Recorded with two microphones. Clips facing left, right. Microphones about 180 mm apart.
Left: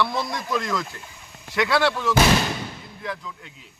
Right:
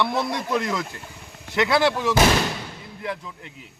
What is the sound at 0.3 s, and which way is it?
A man's voice, 20° right (ahead or behind).